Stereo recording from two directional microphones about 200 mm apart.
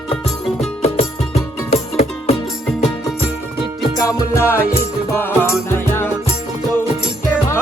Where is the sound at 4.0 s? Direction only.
15° left (ahead or behind).